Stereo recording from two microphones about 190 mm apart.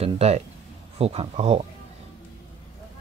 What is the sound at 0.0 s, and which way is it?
Speech, 35° right (ahead or behind).